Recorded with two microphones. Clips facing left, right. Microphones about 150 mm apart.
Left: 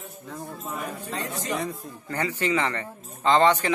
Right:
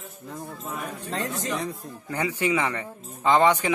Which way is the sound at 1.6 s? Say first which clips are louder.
Left 1 dB; 10° right (ahead or behind).